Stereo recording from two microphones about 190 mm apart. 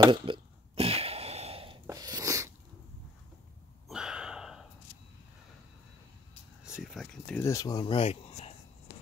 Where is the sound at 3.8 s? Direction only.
5° right (ahead or behind).